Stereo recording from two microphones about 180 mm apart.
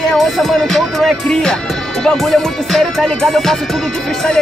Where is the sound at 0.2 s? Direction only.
Centre (ahead or behind).